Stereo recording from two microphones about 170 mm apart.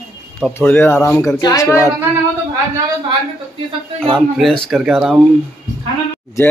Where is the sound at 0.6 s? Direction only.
15° left (ahead or behind).